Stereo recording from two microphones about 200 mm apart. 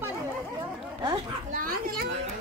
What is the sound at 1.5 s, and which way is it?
Speech, 45° right (ahead or behind).